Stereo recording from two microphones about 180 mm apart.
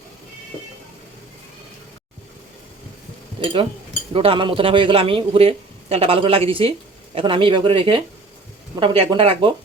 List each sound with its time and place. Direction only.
3.4 s a man's voice: 30° right (ahead or behind)